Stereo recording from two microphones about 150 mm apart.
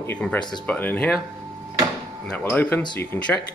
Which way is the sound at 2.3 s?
10° left (ahead or behind).